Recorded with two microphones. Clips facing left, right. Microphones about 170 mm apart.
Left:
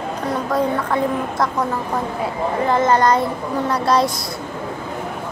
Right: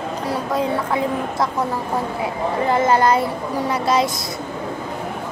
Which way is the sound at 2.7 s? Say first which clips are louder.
Left 1 dB; 10° right (ahead or behind).